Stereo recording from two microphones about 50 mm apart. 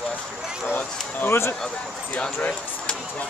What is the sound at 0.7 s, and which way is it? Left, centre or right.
Speech, left.